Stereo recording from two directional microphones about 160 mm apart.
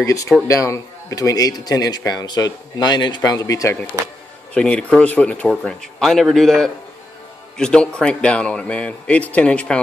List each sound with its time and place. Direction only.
0.0 s a man's voice: 20° left (ahead or behind)
4.6 s speech: 5° left (ahead or behind)